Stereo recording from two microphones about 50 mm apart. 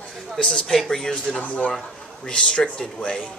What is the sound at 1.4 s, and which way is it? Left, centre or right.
Speech, left.